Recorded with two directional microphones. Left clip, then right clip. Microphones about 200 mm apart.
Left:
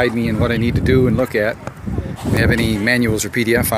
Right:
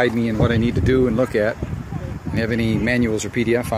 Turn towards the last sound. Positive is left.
turn(degrees=0)  # may be behind; listen again after turning